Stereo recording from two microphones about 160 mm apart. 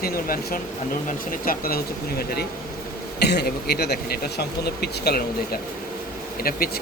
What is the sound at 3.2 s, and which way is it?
Speech, 90° left.